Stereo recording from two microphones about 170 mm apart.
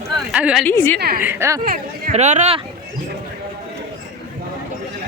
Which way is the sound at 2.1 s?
45° right (ahead or behind).